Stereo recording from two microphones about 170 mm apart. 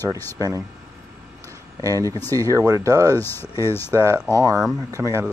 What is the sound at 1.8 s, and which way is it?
Speech, 20° right (ahead or behind).